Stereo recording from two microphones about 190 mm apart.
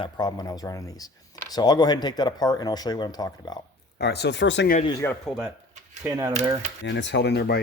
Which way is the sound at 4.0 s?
60° left (ahead or behind).